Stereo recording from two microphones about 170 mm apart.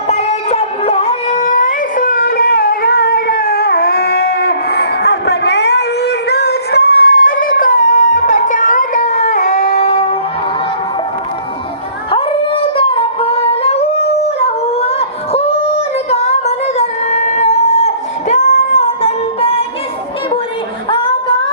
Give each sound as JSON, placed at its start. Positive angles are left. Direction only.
{"t": 0.1, "sound": "a sound", "side_deg": 40}
{"t": 9.7, "sound": "music", "side_deg": 35}
{"t": 12.1, "sound": "humming", "side_deg": 30}
{"t": 14.3, "sound": "a sound", "side_deg": 35}
{"t": 18.8, "sound": "music", "side_deg": 35}
{"t": 20.9, "sound": "singing", "side_deg": 30}